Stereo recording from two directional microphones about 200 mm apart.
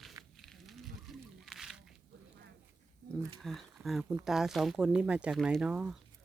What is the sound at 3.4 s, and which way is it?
Speech, centre (ahead or behind).